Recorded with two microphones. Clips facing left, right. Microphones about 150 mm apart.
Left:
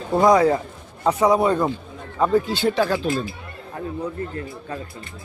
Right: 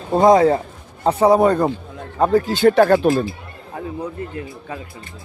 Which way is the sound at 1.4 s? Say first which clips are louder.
Right 4 dB; 50° right (ahead or behind).